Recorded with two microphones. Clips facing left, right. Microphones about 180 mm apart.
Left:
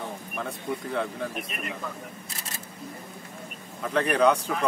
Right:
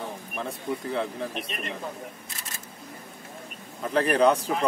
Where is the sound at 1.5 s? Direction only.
5° left (ahead or behind).